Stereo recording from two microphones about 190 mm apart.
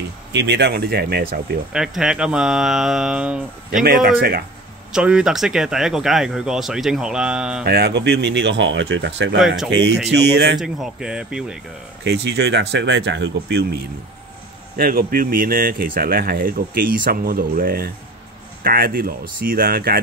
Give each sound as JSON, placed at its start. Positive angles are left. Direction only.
{"t": 0.3, "sound": "speech", "side_deg": -65}
{"t": 1.7, "sound": "speech", "side_deg": -5}
{"t": 3.8, "sound": "speech", "side_deg": -50}
{"t": 4.9, "sound": "speech", "side_deg": -5}
{"t": 7.6, "sound": "speech", "side_deg": -60}
{"t": 10.6, "sound": "speech", "side_deg": 0}
{"t": 12.0, "sound": "speech", "side_deg": -60}
{"t": 14.8, "sound": "speech", "side_deg": -50}